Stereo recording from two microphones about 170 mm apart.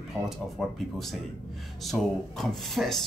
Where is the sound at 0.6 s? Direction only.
Centre (ahead or behind).